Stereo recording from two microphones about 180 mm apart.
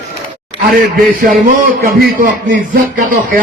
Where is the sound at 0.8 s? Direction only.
50° right (ahead or behind).